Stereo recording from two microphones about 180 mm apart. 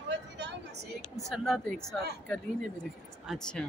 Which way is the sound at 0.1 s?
75° right (ahead or behind).